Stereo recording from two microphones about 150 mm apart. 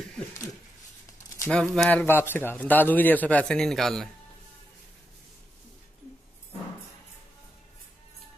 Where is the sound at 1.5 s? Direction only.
5° left (ahead or behind).